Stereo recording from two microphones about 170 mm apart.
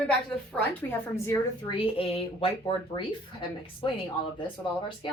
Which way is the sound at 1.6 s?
30° left (ahead or behind).